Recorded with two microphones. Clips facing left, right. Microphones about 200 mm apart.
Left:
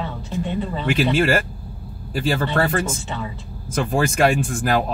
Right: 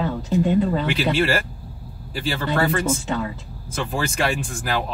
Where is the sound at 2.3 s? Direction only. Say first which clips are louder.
Left 1 dB; 45° left (ahead or behind).